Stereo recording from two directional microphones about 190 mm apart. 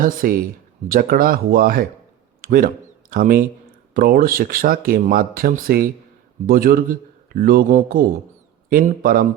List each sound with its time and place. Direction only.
0.0 s speech: 45° right (ahead or behind)